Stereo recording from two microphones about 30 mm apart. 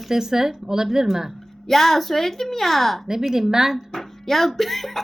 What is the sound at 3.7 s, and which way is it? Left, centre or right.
Speech, centre.